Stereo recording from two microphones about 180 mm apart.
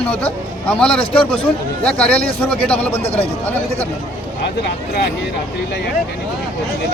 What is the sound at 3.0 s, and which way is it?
Speech, 35° left (ahead or behind).